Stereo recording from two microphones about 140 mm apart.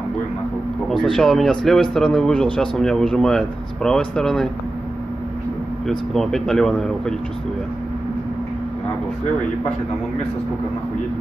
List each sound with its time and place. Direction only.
0.8 s a man's voice: 5° left (ahead or behind)
5.9 s a man's voice: centre (ahead or behind)